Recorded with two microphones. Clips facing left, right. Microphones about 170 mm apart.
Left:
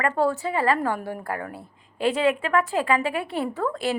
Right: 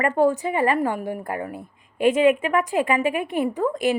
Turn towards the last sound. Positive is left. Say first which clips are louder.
# right 4 dB
turn(degrees=-15)  # may be behind; listen again after turning